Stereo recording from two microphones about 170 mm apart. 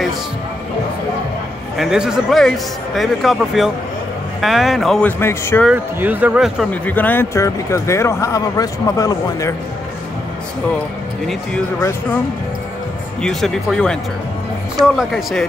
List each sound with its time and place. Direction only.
1.8 s speech: 5° right (ahead or behind)
5.2 s speech: 15° left (ahead or behind)
5.7 s speech: 10° right (ahead or behind)
6.7 s speech: 10° left (ahead or behind)
13.2 s speech: centre (ahead or behind)
15.0 s speech: centre (ahead or behind)